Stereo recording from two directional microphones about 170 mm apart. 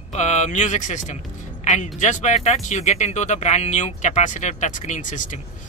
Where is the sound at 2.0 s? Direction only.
45° left (ahead or behind).